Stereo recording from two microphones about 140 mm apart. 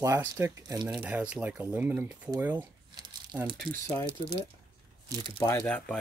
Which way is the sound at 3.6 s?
35° right (ahead or behind).